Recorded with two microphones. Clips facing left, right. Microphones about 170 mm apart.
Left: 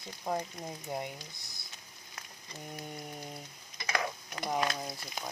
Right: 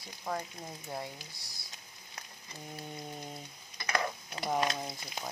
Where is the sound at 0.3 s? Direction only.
20° left (ahead or behind).